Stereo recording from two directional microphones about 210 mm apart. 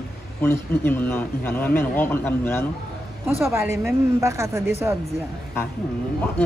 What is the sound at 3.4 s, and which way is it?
A woman's voice, 10° right (ahead or behind).